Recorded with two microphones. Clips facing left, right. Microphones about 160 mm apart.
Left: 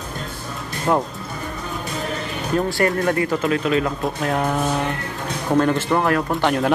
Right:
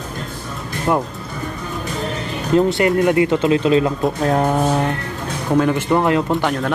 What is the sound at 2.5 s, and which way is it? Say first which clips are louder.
Speech: right 5 dB; 20° right (ahead or behind).